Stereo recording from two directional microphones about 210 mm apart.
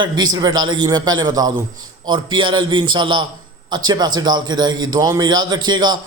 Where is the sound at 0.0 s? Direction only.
20° right (ahead or behind).